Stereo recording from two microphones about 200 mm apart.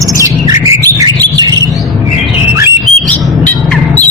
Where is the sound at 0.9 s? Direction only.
20° right (ahead or behind).